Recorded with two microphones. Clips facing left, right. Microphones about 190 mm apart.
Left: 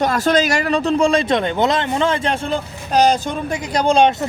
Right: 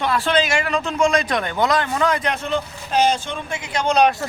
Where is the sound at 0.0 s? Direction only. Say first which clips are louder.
Left 4 dB; 40° left (ahead or behind).